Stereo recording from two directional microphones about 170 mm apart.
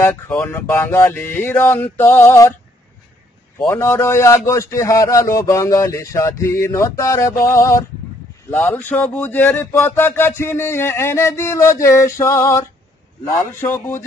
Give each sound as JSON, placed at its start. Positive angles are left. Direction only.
{"t": 0.3, "sound": "speech", "side_deg": 10}
{"t": 3.6, "sound": "speech", "side_deg": 15}